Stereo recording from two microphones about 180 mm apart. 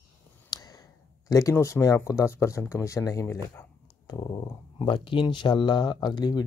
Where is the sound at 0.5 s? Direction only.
20° left (ahead or behind).